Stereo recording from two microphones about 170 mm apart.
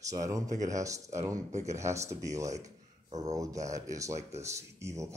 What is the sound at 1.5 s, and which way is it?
Speech, 40° right (ahead or behind).